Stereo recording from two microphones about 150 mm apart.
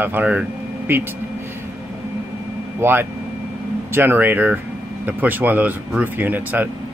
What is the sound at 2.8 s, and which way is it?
Speech, 15° right (ahead or behind).